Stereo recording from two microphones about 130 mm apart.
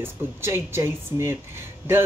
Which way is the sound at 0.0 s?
20° right (ahead or behind).